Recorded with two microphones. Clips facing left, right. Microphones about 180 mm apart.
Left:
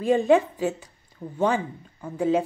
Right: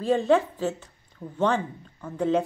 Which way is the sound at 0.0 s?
15° left (ahead or behind).